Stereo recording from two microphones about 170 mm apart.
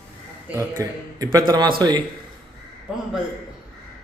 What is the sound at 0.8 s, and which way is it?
Speech, 20° right (ahead or behind).